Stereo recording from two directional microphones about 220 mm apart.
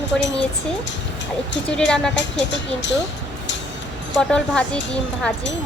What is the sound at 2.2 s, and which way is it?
Speech, 55° left (ahead or behind).